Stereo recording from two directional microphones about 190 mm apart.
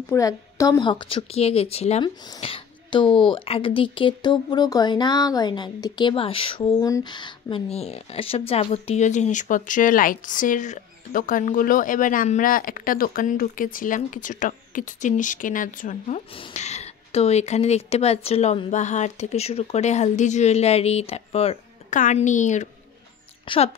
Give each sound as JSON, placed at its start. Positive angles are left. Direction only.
{"t": 0.1, "sound": "a woman's voice", "side_deg": 15}
{"t": 23.4, "sound": "speech", "side_deg": 25}